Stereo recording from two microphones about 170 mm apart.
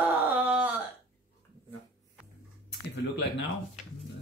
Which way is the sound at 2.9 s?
90° left.